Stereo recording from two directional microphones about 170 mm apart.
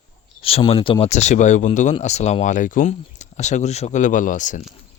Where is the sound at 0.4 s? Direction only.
35° left (ahead or behind).